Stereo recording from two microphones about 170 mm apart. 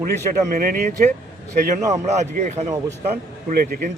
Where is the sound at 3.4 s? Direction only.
55° right (ahead or behind).